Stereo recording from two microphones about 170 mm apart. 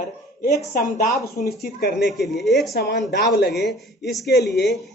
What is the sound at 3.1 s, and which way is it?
Speech, 75° left (ahead or behind).